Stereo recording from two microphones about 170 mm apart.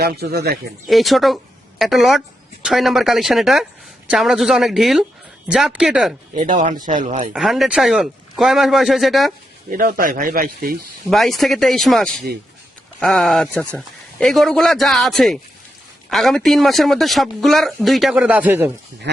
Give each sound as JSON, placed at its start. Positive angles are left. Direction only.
{"t": 0.0, "sound": "speech", "side_deg": -70}
{"t": 0.9, "sound": "a man's voice", "side_deg": 0}
{"t": 6.6, "sound": "speech", "side_deg": -50}
{"t": 7.3, "sound": "a man's voice", "side_deg": 0}
{"t": 9.6, "sound": "speech", "side_deg": -55}
{"t": 11.0, "sound": "a man's voice", "side_deg": 0}
{"t": 19.1, "sound": "speech", "side_deg": -90}